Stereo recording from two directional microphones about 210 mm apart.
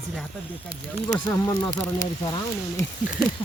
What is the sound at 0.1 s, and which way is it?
Speech, 5° right (ahead or behind).